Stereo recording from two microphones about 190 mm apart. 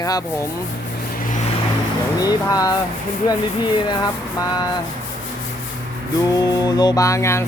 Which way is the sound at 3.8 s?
25° left (ahead or behind).